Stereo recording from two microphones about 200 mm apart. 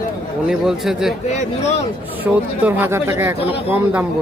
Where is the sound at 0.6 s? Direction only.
Centre (ahead or behind).